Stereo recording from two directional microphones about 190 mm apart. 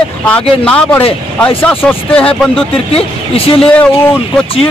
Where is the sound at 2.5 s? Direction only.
30° left (ahead or behind).